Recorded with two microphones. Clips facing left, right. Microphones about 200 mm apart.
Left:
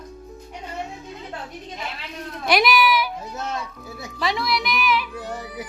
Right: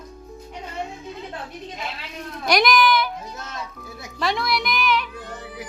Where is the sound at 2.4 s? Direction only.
5° left (ahead or behind).